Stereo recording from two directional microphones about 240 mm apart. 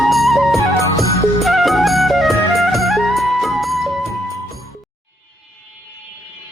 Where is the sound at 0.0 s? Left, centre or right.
Centre.